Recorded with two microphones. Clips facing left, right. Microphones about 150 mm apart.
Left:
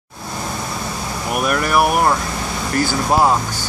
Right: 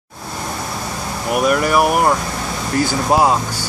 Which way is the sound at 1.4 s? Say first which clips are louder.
Right 2 dB; 15° right (ahead or behind).